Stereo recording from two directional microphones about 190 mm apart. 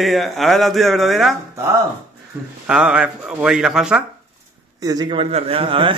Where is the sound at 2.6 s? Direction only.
5° right (ahead or behind).